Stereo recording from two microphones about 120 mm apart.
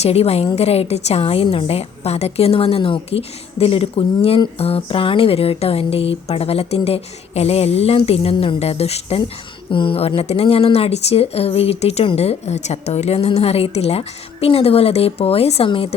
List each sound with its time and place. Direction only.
0.0 s speech: 60° left (ahead or behind)